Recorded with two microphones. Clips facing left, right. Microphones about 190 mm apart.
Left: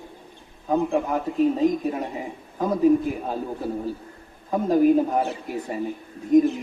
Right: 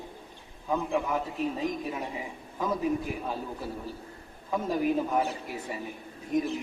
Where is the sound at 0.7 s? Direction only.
45° left (ahead or behind).